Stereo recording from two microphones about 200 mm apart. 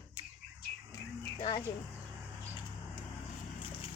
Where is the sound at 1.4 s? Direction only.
25° left (ahead or behind).